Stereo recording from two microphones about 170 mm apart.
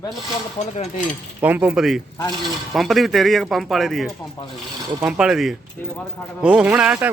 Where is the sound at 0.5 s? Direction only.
40° left (ahead or behind).